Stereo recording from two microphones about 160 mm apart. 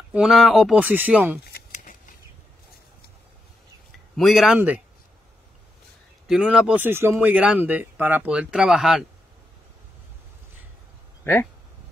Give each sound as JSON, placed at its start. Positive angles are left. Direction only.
{"t": 0.1, "sound": "speech", "side_deg": 0}
{"t": 1.7, "sound": "scissors", "side_deg": 55}
{"t": 4.2, "sound": "speech", "side_deg": 0}
{"t": 6.2, "sound": "speech", "side_deg": -5}